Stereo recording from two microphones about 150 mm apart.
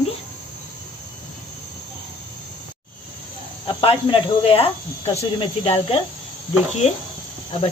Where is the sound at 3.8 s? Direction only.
35° left (ahead or behind).